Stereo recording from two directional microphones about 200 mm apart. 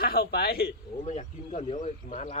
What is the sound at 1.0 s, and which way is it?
Speech, 35° left (ahead or behind).